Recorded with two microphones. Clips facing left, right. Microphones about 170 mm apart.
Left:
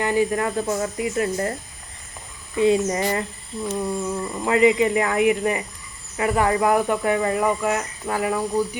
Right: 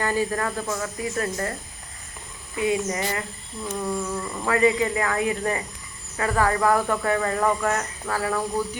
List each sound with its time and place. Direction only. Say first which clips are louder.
0.0 s speech: left 4 dB; 15° left (ahead or behind)
2.6 s speech: left 5 dB; 30° left (ahead or behind)
3.8 s speech: left 1 dB; 20° left (ahead or behind)